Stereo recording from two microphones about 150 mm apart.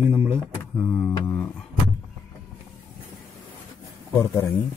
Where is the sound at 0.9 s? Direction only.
10° left (ahead or behind).